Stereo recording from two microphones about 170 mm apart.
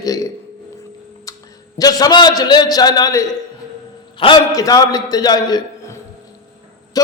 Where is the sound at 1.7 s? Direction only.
20° left (ahead or behind).